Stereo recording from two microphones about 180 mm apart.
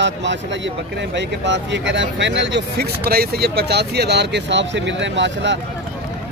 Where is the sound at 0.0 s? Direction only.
80° right.